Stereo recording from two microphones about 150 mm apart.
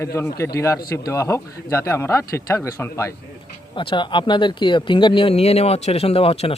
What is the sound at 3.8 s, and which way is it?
Speech, 35° left (ahead or behind).